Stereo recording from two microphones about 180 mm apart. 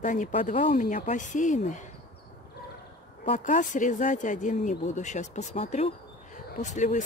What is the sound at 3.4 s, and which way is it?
Speech, 45° left (ahead or behind).